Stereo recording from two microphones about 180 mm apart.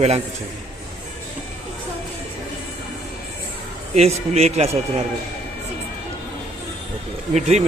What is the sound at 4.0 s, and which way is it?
Speech, 35° right (ahead or behind).